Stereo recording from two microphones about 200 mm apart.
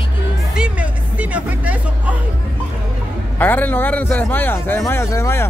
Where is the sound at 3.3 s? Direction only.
10° left (ahead or behind).